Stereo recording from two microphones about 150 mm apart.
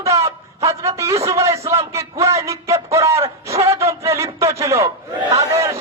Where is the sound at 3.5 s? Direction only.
40° right (ahead or behind).